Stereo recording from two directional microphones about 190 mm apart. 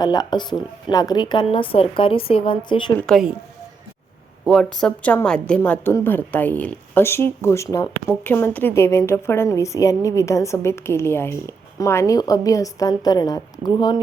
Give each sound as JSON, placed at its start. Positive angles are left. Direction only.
{"t": 0.0, "sound": "speech", "side_deg": 20}
{"t": 3.1, "sound": "a woman's voice", "side_deg": 0}
{"t": 4.4, "sound": "a woman's voice", "side_deg": 0}